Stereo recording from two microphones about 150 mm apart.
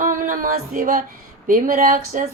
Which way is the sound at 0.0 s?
60° right (ahead or behind).